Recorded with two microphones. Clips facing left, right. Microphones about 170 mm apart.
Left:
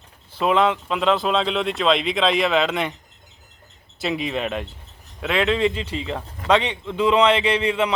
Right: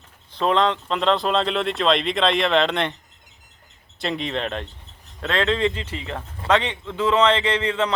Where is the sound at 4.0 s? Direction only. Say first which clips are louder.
Left 1 dB; 5° left (ahead or behind).